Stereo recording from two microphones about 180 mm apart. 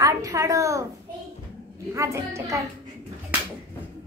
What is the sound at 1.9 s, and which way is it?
Speech, 15° right (ahead or behind).